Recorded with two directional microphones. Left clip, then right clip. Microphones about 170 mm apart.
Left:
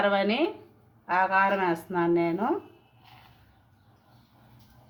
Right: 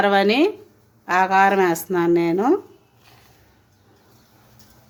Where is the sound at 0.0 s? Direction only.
90° right.